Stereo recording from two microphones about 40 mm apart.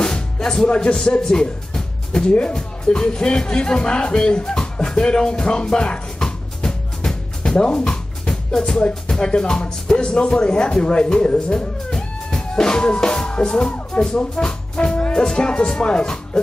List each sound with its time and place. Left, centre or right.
0.0 s music: centre
1.2 s speech: centre
11.2 s speech: left
11.5 s music: centre
15.2 s speech: left